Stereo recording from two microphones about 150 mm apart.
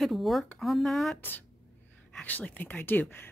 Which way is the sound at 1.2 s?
15° left (ahead or behind).